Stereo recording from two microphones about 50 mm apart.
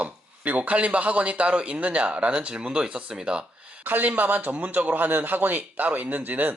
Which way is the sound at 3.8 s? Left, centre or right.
Right.